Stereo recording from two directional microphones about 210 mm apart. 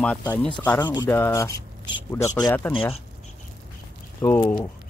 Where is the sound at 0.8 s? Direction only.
15° left (ahead or behind).